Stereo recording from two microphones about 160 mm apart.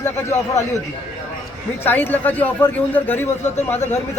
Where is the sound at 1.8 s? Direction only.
15° left (ahead or behind).